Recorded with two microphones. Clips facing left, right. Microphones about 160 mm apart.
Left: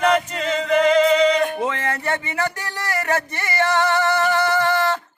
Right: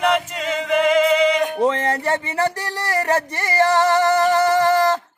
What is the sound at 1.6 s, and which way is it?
Music, 35° right (ahead or behind).